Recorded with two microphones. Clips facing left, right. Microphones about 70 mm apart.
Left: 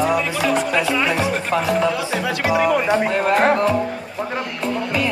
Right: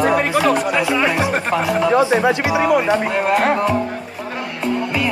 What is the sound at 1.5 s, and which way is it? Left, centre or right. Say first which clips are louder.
Speech: right 3 dB; right.